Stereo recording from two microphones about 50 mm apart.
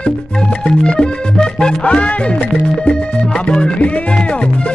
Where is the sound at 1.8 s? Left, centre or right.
Left.